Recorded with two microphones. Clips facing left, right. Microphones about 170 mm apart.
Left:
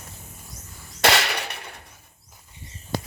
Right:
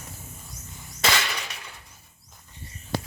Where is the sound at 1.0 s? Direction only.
65° left (ahead or behind).